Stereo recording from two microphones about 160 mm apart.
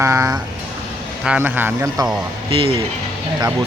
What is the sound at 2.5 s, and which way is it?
Speech, 35° right (ahead or behind).